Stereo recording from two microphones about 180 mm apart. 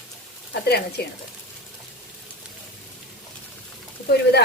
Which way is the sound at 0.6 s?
65° left (ahead or behind).